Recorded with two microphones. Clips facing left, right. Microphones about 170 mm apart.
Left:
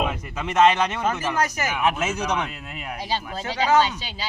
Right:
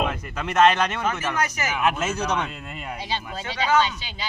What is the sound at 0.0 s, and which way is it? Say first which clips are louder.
Speech: even; 5° left (ahead or behind).